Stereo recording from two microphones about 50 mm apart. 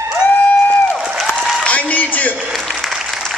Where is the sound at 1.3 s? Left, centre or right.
Centre.